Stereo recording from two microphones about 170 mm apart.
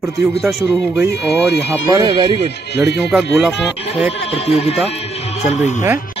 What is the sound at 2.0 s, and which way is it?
Speech, 25° right (ahead or behind).